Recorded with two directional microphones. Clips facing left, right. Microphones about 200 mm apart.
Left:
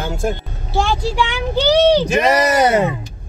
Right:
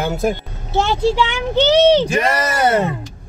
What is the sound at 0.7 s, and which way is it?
Speech, 25° right (ahead or behind).